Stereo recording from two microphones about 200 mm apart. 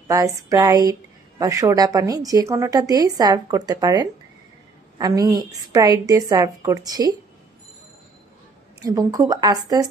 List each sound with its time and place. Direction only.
0.1 s a woman's voice: 15° right (ahead or behind)
8.8 s a woman's voice: 20° right (ahead or behind)